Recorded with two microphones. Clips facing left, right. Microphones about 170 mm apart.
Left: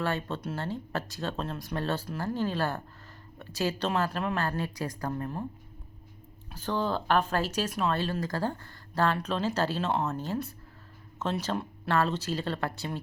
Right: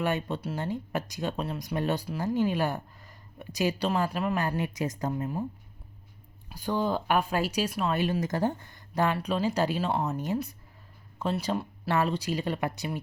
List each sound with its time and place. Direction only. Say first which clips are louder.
0.0 s speech: right 2 dB; 15° right (ahead or behind)
4.4 s a woman's voice: right 2 dB; 15° right (ahead or behind)
6.5 s speech: right 2 dB; 15° right (ahead or behind)